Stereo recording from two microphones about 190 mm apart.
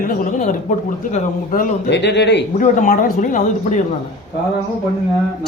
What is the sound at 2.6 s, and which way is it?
Speech, 45° left (ahead or behind).